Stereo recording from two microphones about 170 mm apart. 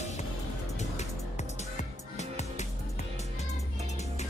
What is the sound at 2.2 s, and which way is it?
Music, 40° left (ahead or behind).